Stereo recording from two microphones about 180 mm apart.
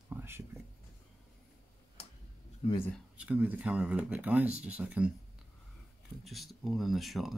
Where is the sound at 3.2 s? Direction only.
10° right (ahead or behind).